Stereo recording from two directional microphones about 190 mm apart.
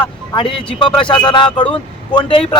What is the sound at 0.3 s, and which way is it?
Speech, 25° left (ahead or behind).